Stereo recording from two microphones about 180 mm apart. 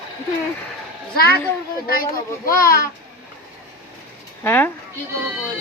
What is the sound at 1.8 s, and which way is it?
A child's voice, 55° left (ahead or behind).